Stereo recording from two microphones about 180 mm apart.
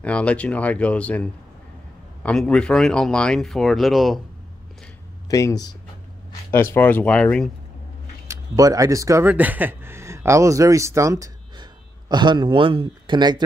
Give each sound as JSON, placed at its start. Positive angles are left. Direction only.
{"t": 0.0, "sound": "speech", "side_deg": 5}
{"t": 5.3, "sound": "speech", "side_deg": 20}
{"t": 8.3, "sound": "speech", "side_deg": -20}